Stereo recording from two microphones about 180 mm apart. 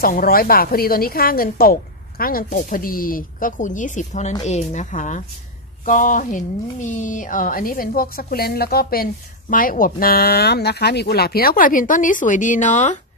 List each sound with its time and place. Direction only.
0.0 s speech: 55° left (ahead or behind)